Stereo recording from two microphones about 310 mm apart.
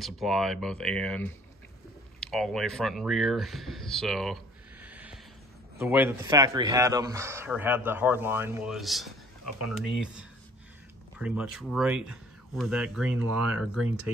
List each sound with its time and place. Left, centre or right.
0.0 s speech: centre
4.8 s a sound: centre
5.8 s speech: centre
11.1 s speech: centre
14.1 s speech: centre